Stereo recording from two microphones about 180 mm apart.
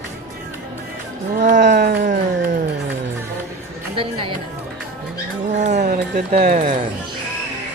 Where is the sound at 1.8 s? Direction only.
75° right (ahead or behind).